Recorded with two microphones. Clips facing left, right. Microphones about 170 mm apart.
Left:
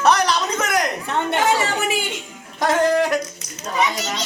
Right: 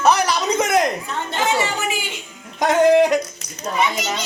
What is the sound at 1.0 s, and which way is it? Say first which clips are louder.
Speech: left 5 dB; 65° left (ahead or behind).